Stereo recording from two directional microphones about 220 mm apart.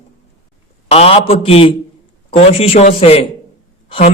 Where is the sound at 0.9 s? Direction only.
25° left (ahead or behind).